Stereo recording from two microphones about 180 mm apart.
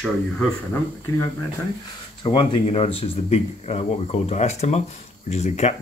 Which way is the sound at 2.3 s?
30° left (ahead or behind).